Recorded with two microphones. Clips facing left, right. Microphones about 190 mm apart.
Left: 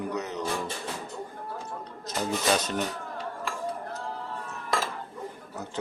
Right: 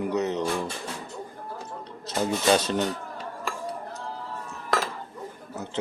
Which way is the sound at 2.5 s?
30° right (ahead or behind).